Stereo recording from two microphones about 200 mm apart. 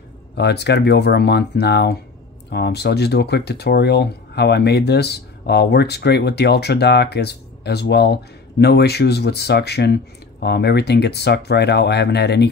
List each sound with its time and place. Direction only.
0.4 s speech: 55° left (ahead or behind)